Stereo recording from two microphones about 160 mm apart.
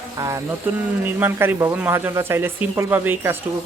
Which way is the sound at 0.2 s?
20° right (ahead or behind).